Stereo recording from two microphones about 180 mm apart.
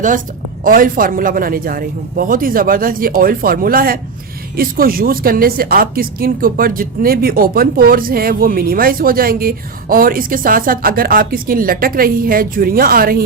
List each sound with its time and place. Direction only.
0.6 s a woman's voice: 50° right (ahead or behind)